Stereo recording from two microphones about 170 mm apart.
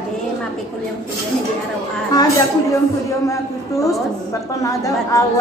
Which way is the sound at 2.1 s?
20° left (ahead or behind).